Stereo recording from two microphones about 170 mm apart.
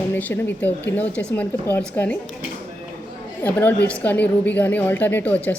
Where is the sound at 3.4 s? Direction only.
10° left (ahead or behind).